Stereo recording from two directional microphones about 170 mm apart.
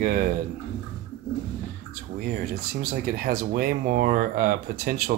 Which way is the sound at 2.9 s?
60° right (ahead or behind).